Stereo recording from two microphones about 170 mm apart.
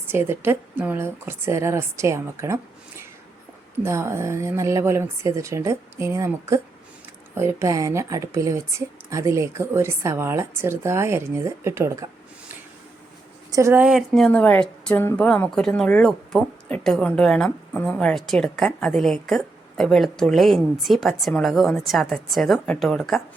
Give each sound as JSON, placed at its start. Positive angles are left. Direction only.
{"t": 0.1, "sound": "speech", "side_deg": -15}
{"t": 3.8, "sound": "speech", "side_deg": -15}
{"t": 13.5, "sound": "speech", "side_deg": -15}
{"t": 13.8, "sound": "speech", "side_deg": 0}